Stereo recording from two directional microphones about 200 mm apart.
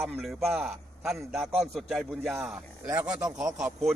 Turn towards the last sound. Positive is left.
turn(degrees=0)  # may be behind; listen again after turning